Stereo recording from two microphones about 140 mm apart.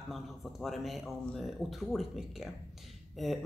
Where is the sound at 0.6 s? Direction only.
Centre (ahead or behind).